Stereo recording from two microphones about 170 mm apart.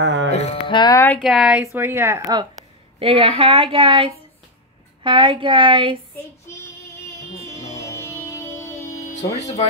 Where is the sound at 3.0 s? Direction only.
35° right (ahead or behind).